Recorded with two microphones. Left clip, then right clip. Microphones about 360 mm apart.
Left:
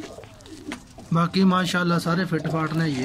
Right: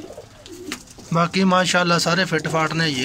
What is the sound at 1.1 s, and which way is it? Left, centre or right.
Speech, centre.